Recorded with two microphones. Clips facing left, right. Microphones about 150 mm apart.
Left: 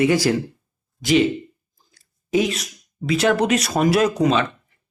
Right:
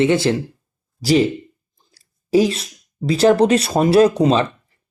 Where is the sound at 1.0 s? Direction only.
35° right (ahead or behind).